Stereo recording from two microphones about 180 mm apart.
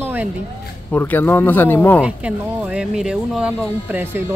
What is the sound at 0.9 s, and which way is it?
A man's voice, 10° left (ahead or behind).